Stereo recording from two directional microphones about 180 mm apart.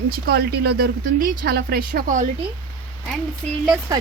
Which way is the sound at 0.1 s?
60° right (ahead or behind).